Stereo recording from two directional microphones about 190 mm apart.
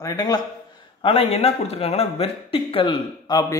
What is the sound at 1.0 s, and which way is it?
Speech, 30° left (ahead or behind).